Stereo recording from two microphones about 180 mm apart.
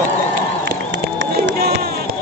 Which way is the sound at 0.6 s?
70° right (ahead or behind).